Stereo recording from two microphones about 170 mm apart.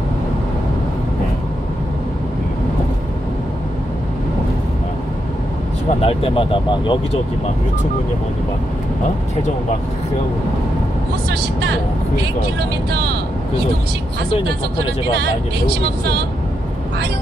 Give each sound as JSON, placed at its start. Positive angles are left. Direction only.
{"t": 5.9, "sound": "speech", "side_deg": 35}